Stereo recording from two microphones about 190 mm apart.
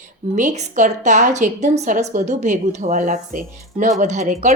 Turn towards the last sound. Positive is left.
turn(degrees=-40)  # may be behind; listen again after turning